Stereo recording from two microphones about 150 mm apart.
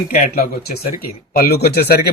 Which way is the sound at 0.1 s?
75° left (ahead or behind).